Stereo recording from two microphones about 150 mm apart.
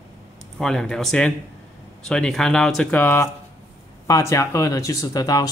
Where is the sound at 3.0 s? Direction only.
15° left (ahead or behind).